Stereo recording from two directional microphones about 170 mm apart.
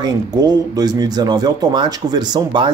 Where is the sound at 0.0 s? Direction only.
25° right (ahead or behind).